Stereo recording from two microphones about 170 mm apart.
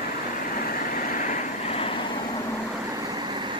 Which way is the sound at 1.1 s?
50° left (ahead or behind).